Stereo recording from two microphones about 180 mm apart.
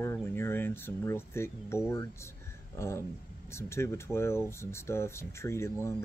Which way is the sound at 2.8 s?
15° left (ahead or behind).